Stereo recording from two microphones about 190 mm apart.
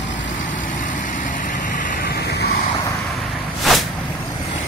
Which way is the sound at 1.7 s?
45° left (ahead or behind).